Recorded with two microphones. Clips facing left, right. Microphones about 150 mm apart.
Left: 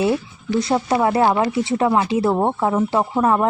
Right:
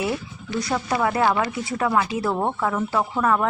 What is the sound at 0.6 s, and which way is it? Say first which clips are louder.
Speech: left 4 dB; 25° left (ahead or behind).